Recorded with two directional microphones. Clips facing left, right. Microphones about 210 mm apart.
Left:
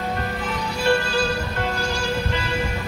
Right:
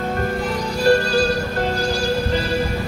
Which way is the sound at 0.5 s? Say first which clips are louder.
Right 4 dB; 35° right (ahead or behind).